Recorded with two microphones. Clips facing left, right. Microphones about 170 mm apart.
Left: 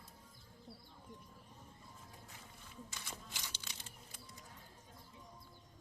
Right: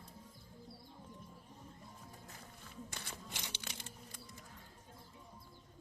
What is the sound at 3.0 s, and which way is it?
Crumpling, 60° right (ahead or behind).